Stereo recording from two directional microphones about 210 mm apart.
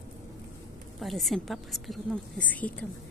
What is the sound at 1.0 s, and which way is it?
Speech, centre (ahead or behind).